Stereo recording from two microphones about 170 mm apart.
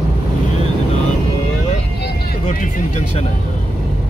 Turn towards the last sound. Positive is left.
turn(degrees=40)  # may be behind; listen again after turning